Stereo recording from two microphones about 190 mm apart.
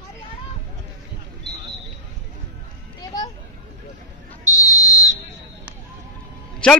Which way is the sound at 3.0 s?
20° left (ahead or behind).